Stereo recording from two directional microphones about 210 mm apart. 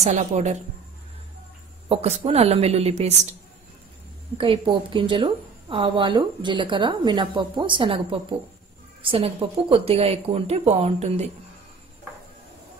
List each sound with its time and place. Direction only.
0.0 s a woman's voice: 35° right (ahead or behind)
1.9 s a woman's voice: 30° right (ahead or behind)
4.4 s a woman's voice: 25° right (ahead or behind)